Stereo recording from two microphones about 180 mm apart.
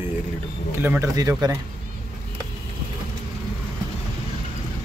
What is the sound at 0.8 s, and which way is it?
Speech, 15° right (ahead or behind).